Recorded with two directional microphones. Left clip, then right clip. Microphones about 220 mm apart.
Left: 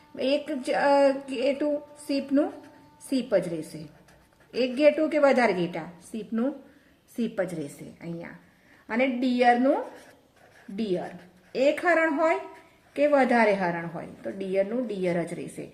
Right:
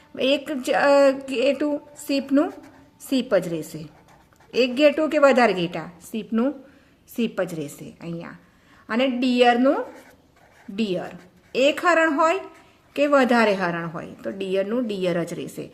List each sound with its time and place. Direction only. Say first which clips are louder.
0.2 s a woman's voice: right 4 dB; 45° right (ahead or behind)
11.5 s a woman's voice: right 4 dB; 50° right (ahead or behind)